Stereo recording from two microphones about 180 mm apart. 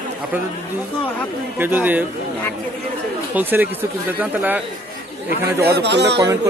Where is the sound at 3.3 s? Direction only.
10° right (ahead or behind).